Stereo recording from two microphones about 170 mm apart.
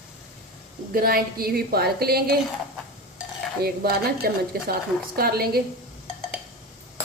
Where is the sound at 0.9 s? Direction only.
60° right (ahead or behind).